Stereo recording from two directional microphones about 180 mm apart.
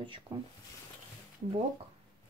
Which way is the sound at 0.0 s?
25° right (ahead or behind).